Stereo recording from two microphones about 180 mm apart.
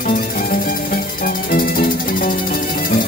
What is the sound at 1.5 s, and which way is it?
Music, 50° left (ahead or behind).